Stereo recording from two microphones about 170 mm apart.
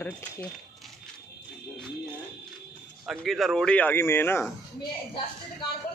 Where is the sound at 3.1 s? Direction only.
Centre (ahead or behind).